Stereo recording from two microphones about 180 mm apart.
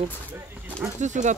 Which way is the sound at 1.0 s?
40° right (ahead or behind).